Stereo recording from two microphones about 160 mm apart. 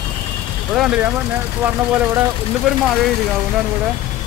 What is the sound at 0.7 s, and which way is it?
Speech, centre (ahead or behind).